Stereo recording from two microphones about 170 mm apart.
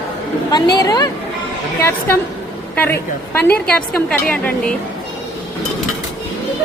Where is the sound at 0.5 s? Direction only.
20° left (ahead or behind).